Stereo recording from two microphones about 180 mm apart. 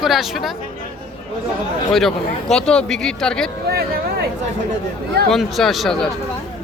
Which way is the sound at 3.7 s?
60° right (ahead or behind).